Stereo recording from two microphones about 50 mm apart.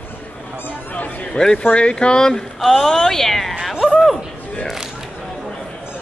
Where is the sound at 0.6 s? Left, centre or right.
Left.